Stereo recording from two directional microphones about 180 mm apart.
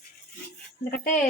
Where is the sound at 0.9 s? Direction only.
55° left (ahead or behind).